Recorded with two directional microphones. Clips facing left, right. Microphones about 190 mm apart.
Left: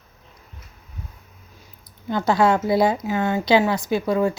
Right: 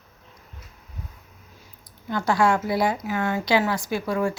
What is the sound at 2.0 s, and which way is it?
A woman's voice, 20° left (ahead or behind).